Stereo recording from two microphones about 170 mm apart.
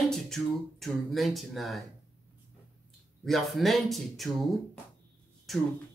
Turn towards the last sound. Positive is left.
turn(degrees=0)  # may be behind; listen again after turning